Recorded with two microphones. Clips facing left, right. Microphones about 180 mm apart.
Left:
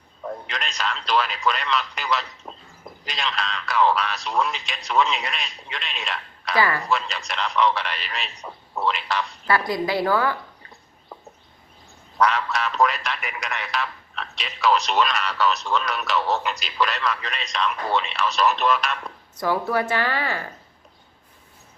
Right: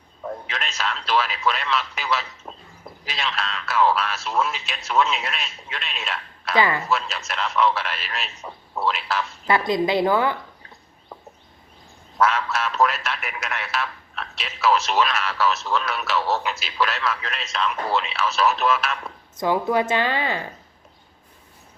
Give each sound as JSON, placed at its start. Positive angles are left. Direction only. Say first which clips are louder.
{"t": 0.2, "sound": "a man's voice", "louder": "even", "side_deg": 0}
{"t": 6.6, "sound": "speech", "louder": "right 1 dB", "side_deg": -20}
{"t": 6.8, "sound": "a man's voice", "louder": "even", "side_deg": 0}
{"t": 9.5, "sound": "speech", "louder": "right 3 dB", "side_deg": -20}
{"t": 12.1, "sound": "a man's voice", "louder": "even", "side_deg": 0}
{"t": 19.4, "sound": "speech", "louder": "right 2 dB", "side_deg": -20}